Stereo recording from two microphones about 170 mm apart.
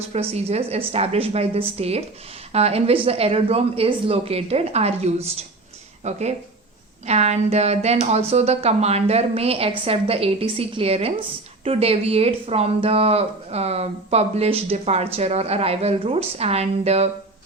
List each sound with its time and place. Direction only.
0.1 s a woman's voice: 40° right (ahead or behind)